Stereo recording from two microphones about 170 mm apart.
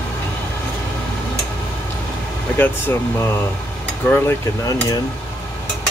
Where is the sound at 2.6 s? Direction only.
15° left (ahead or behind).